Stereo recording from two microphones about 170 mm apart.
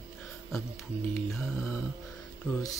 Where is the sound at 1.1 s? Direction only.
5° left (ahead or behind).